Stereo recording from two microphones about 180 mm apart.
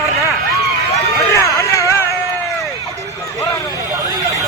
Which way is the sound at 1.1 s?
15° left (ahead or behind).